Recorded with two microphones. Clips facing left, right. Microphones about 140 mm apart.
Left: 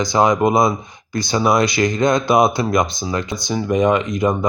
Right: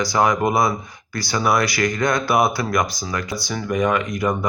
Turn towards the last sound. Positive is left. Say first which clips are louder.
# left 4 dB
turn(degrees=20)  # may be behind; listen again after turning